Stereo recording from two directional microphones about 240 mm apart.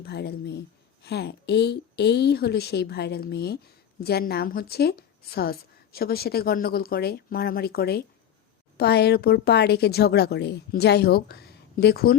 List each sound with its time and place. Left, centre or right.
0.0 s a woman's voice: left